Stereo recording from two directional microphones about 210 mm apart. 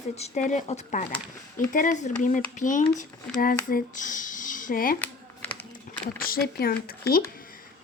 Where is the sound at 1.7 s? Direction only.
40° left (ahead or behind).